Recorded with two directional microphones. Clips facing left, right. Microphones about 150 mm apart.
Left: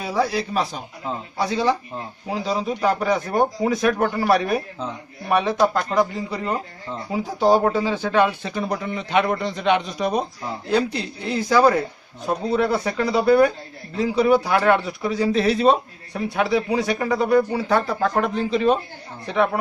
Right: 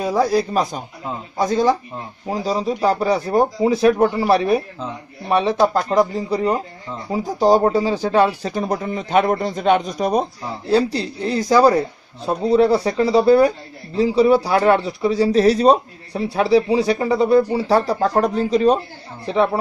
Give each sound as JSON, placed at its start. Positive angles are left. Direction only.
{"t": 0.0, "sound": "speech", "side_deg": -45}
{"t": 5.3, "sound": "speech", "side_deg": -30}
{"t": 5.9, "sound": "speech", "side_deg": -40}